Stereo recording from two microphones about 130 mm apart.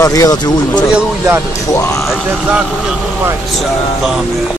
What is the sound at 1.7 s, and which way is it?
Speech, 25° left (ahead or behind).